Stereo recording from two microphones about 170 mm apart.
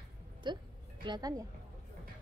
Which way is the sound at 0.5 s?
25° right (ahead or behind).